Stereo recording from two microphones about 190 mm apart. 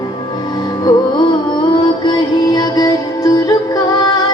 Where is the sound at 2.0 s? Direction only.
20° left (ahead or behind).